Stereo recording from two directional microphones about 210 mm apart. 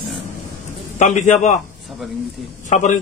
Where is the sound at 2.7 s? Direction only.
35° left (ahead or behind).